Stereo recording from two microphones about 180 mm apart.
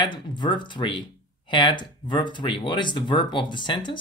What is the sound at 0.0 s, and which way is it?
A man's voice, 25° left (ahead or behind).